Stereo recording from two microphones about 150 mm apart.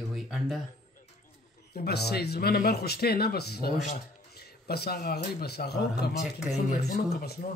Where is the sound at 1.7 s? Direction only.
90° left.